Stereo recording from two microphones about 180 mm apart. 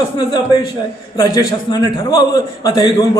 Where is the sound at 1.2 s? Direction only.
20° left (ahead or behind).